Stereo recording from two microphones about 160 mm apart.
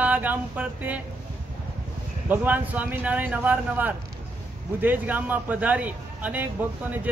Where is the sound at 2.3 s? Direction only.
10° right (ahead or behind).